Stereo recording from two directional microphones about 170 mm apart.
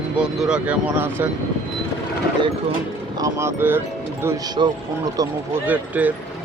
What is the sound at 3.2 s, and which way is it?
Speech, 15° right (ahead or behind).